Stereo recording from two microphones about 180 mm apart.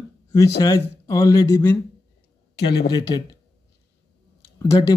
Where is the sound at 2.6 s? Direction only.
65° left (ahead or behind).